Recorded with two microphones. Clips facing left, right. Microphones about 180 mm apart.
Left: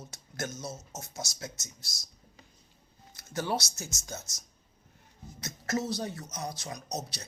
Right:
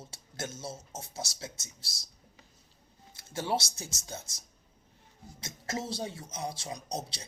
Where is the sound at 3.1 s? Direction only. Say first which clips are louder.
Even; 25° right (ahead or behind).